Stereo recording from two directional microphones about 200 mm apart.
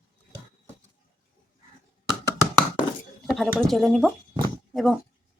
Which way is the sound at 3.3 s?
Centre (ahead or behind).